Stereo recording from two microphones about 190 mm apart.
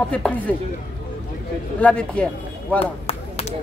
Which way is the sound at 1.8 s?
5° left (ahead or behind).